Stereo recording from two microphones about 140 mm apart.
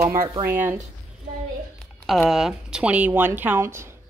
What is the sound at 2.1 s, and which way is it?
Speech, centre (ahead or behind).